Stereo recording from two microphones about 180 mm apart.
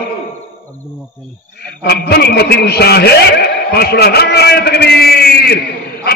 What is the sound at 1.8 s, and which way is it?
A man's voice, 65° left (ahead or behind).